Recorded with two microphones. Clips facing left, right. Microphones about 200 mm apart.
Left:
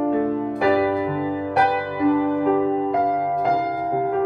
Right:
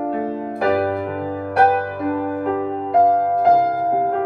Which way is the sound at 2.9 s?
50° right (ahead or behind).